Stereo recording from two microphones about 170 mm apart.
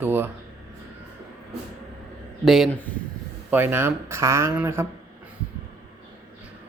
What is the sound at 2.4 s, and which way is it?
Speech, centre (ahead or behind).